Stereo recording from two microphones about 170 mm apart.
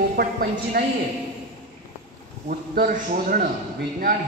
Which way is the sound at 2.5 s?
55° right (ahead or behind).